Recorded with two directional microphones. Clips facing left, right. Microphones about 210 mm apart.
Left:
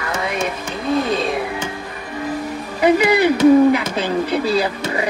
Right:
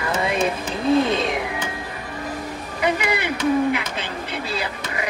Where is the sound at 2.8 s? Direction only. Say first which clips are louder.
Left 9 dB; 35° left (ahead or behind).